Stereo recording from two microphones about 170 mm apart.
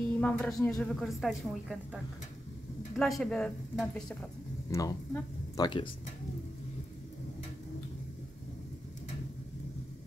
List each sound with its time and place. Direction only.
0.2 s a woman's voice: 5° left (ahead or behind)
3.0 s a woman's voice: 5° left (ahead or behind)
4.6 s speech: 20° left (ahead or behind)